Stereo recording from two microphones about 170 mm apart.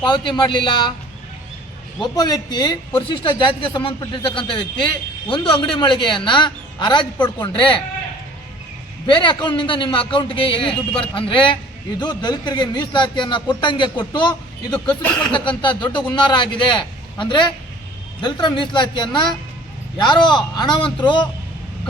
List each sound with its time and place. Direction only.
0.0 s speech: 25° left (ahead or behind)
2.0 s speech: 25° left (ahead or behind)
9.0 s a man's voice: 30° left (ahead or behind)